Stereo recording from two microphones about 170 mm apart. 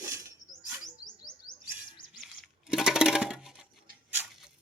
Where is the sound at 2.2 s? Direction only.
Centre (ahead or behind).